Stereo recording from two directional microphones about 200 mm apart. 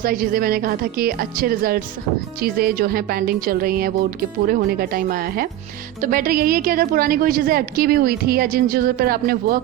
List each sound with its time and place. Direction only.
0.0 s a woman's voice: 45° right (ahead or behind)